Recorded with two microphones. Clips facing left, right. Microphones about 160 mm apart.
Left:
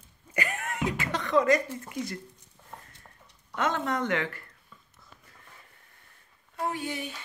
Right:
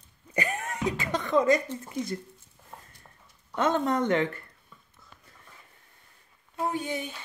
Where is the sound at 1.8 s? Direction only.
25° right (ahead or behind).